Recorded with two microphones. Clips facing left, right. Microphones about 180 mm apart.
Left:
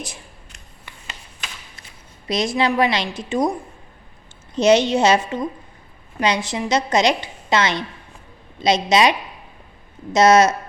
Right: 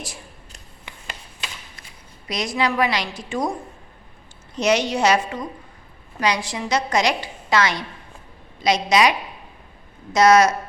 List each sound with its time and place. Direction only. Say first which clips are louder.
2.2 s a woman's voice: left 3 dB; 25° left (ahead or behind)
4.5 s a woman's voice: left 5 dB; 25° left (ahead or behind)